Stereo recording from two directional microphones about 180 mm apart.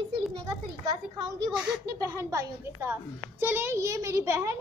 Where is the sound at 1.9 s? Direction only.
15° right (ahead or behind).